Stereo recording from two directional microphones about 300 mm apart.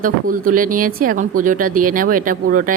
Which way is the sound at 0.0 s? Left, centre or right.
Right.